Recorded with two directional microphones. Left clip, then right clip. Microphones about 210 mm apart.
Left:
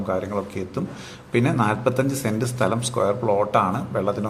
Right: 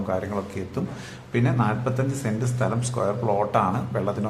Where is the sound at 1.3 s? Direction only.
25° left (ahead or behind).